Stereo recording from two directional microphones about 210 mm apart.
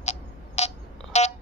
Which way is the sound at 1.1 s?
35° left (ahead or behind).